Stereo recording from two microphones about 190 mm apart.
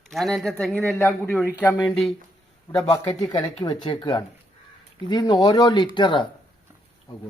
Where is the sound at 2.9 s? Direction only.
20° left (ahead or behind).